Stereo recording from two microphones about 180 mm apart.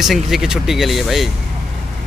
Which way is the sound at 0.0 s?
Centre (ahead or behind).